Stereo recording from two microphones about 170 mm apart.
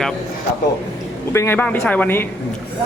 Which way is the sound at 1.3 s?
15° left (ahead or behind).